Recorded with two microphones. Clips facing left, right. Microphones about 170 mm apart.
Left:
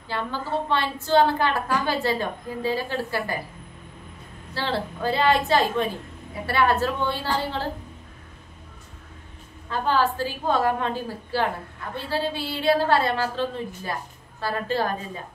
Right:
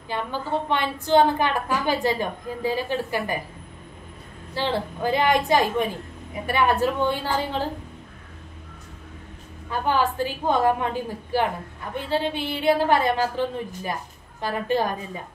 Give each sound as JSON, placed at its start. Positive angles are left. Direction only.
{"t": 0.1, "sound": "a woman's voice", "side_deg": -15}
{"t": 4.6, "sound": "a woman's voice", "side_deg": -15}
{"t": 9.7, "sound": "a woman's voice", "side_deg": -15}